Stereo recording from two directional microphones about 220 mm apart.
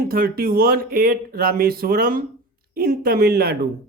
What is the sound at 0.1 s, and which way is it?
Speech, 40° right (ahead or behind).